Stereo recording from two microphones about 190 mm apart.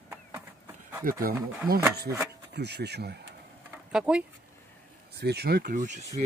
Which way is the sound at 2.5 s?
60° right (ahead or behind).